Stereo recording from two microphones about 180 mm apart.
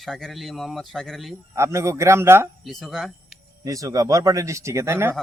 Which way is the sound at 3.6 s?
20° right (ahead or behind).